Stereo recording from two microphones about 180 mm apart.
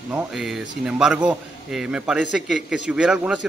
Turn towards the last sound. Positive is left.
turn(degrees=-5)  # may be behind; listen again after turning